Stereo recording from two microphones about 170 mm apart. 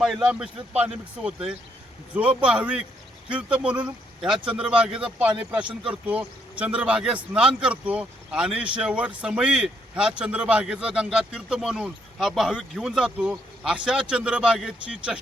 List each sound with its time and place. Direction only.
0.0 s a man's voice: 5° right (ahead or behind)